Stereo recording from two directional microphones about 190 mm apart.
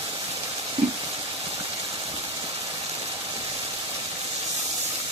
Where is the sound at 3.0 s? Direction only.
25° right (ahead or behind).